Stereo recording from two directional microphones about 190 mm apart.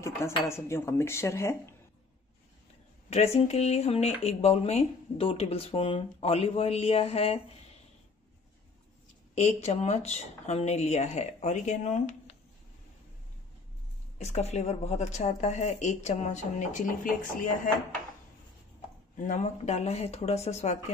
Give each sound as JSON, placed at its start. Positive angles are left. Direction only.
{"t": 0.5, "sound": "speech", "side_deg": 15}
{"t": 3.1, "sound": "speech", "side_deg": 35}
{"t": 9.3, "sound": "speech", "side_deg": 35}
{"t": 14.1, "sound": "speech", "side_deg": 35}
{"t": 19.1, "sound": "speech", "side_deg": 40}